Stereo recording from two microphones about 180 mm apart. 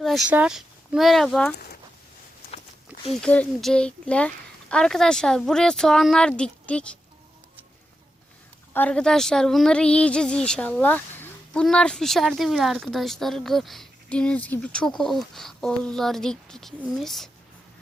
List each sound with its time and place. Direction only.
0.0 s speech: centre (ahead or behind)
3.2 s a woman's voice: 5° left (ahead or behind)
8.7 s a woman's voice: 10° left (ahead or behind)